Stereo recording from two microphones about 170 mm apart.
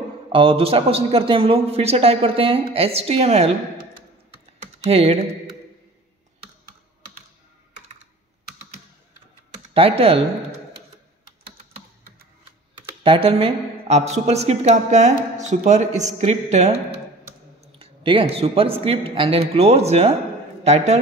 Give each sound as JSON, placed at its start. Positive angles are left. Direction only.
{"t": 0.3, "sound": "speech", "side_deg": -30}
{"t": 4.8, "sound": "speech", "side_deg": -35}
{"t": 9.8, "sound": "speech", "side_deg": -35}
{"t": 13.0, "sound": "speech", "side_deg": -30}
{"t": 17.7, "sound": "speech", "side_deg": -35}